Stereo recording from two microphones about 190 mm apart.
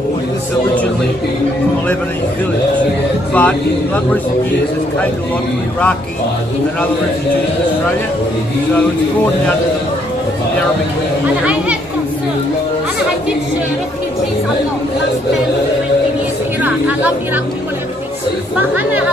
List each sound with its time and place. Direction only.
3.3 s speech: 10° left (ahead or behind)
16.6 s a woman's voice: 10° right (ahead or behind)